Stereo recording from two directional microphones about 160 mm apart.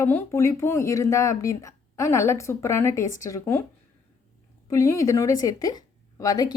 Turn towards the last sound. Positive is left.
turn(degrees=25)  # may be behind; listen again after turning